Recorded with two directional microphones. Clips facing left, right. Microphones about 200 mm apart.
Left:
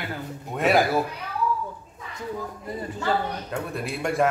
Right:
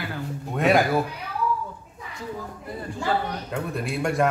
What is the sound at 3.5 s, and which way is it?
Speech, centre (ahead or behind).